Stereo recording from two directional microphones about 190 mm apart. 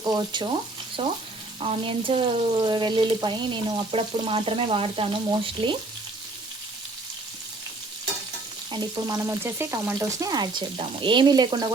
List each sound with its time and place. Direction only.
0.0 s frying: 20° right (ahead or behind)
8.7 s frying: 20° right (ahead or behind)